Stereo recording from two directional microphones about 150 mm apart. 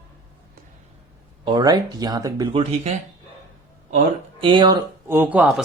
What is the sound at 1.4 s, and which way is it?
Speech, 25° right (ahead or behind).